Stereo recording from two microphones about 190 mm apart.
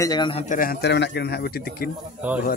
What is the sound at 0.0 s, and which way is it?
Speech, 20° left (ahead or behind).